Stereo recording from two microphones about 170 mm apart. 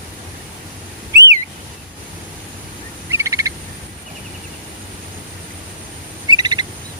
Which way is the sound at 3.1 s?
20° right (ahead or behind).